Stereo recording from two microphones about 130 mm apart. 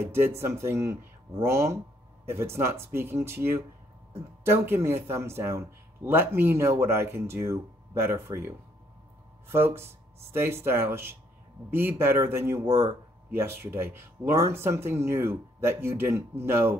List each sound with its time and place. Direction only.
0.0 s speech: 20° right (ahead or behind)
9.5 s speech: 20° right (ahead or behind)